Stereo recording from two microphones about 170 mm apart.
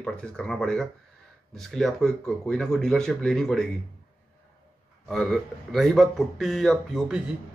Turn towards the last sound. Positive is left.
turn(degrees=-5)  # may be behind; listen again after turning